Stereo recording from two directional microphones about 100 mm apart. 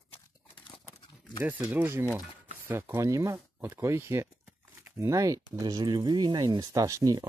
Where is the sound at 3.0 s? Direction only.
30° right (ahead or behind).